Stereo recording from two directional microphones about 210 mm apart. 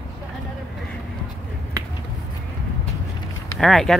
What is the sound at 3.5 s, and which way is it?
Speech, centre (ahead or behind).